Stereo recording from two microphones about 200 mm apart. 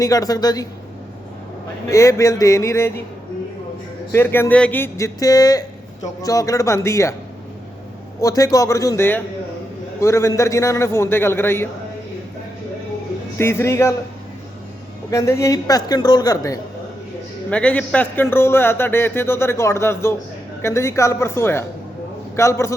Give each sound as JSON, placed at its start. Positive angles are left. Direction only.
{"t": 0.0, "sound": "a woman's voice", "side_deg": 20}
{"t": 1.9, "sound": "speech", "side_deg": 15}
{"t": 4.1, "sound": "speech", "side_deg": 10}
{"t": 8.2, "sound": "speech", "side_deg": 15}
{"t": 13.4, "sound": "speech", "side_deg": 15}
{"t": 15.1, "sound": "speech", "side_deg": 15}
{"t": 17.5, "sound": "speech", "side_deg": 5}